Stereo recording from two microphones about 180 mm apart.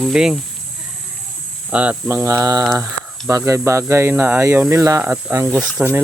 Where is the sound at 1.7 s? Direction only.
5° right (ahead or behind).